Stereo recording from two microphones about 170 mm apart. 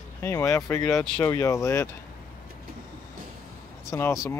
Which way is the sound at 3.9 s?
15° left (ahead or behind).